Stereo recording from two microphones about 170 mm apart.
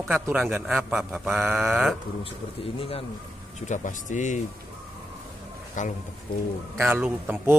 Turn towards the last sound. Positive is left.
turn(degrees=-10)  # may be behind; listen again after turning